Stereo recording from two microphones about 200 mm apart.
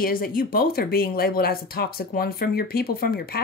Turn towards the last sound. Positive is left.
turn(degrees=50)  # may be behind; listen again after turning